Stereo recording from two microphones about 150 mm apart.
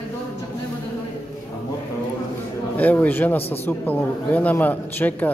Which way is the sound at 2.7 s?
10° left (ahead or behind).